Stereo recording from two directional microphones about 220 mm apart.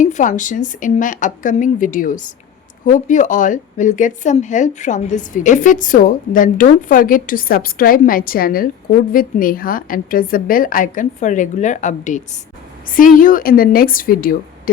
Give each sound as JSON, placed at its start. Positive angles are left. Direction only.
{"t": 0.0, "sound": "speech", "side_deg": 35}